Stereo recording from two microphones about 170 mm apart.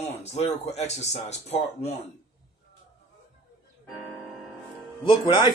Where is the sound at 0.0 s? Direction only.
40° left (ahead or behind).